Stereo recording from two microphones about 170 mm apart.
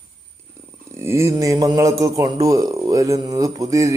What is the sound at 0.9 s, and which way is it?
Speech, 15° right (ahead or behind).